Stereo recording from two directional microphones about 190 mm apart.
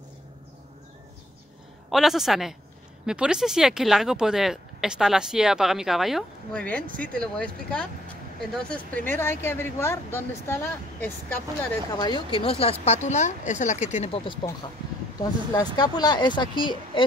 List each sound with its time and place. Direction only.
1.9 s speech: centre (ahead or behind)
11.9 s speech: 25° left (ahead or behind)